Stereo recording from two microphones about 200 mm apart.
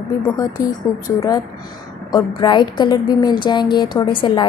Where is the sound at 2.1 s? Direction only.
20° left (ahead or behind).